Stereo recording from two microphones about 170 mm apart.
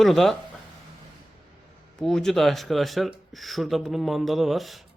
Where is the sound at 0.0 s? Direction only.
Centre (ahead or behind).